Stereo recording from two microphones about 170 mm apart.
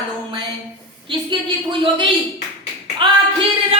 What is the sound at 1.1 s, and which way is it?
Speech, 30° right (ahead or behind).